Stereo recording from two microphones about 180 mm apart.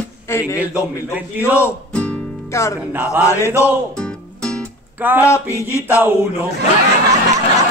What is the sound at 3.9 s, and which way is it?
Music, 5° left (ahead or behind).